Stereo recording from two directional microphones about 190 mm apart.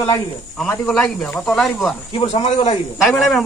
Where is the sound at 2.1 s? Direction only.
35° left (ahead or behind).